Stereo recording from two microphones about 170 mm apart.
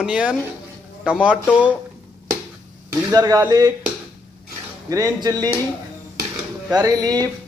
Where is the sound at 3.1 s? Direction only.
20° right (ahead or behind).